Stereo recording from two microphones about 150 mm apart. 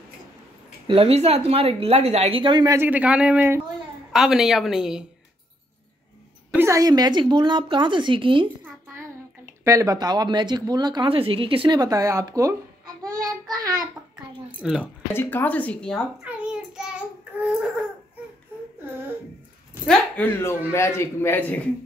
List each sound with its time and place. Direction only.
0.8 s speech: 40° right (ahead or behind)
2.7 s a man's voice: 10° right (ahead or behind)
4.1 s speech: 5° right (ahead or behind)
6.5 s speech: 20° right (ahead or behind); by 8.5 s 35° right (ahead or behind)
9.7 s speech: 20° right (ahead or behind)
13.2 s child singing: 25° right (ahead or behind)
14.6 s speech: centre (ahead or behind)
15.1 s a man's voice: 15° left (ahead or behind)
16.3 s child singing: 5° right (ahead or behind)
19.9 s a man's voice: 10° left (ahead or behind)